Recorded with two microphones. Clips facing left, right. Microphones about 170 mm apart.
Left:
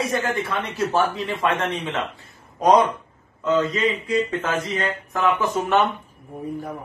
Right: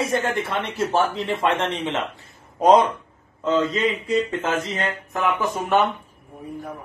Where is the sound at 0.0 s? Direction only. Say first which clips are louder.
Right 1 dB; 25° right (ahead or behind).